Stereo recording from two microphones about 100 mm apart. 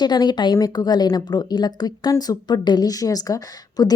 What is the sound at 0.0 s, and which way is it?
A woman's voice, 45° left (ahead or behind).